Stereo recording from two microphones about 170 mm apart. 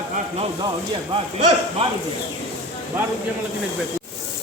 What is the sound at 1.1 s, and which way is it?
Speech, 25° right (ahead or behind).